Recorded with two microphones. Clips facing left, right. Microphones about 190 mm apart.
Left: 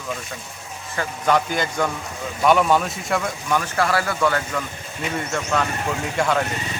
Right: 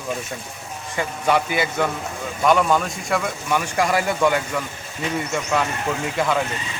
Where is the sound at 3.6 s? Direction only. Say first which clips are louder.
Right 1 dB; 15° right (ahead or behind).